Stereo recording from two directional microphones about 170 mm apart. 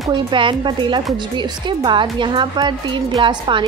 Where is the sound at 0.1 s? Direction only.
30° right (ahead or behind).